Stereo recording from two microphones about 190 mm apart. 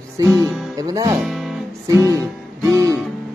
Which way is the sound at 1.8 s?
15° right (ahead or behind).